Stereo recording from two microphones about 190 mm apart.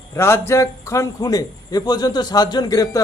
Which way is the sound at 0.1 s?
15° left (ahead or behind).